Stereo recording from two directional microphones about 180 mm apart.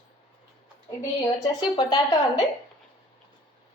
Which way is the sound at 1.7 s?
25° left (ahead or behind).